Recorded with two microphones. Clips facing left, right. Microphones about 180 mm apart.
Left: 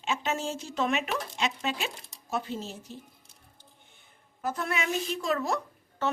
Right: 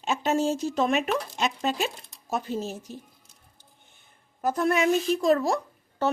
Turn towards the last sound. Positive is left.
turn(degrees=-35)  # may be behind; listen again after turning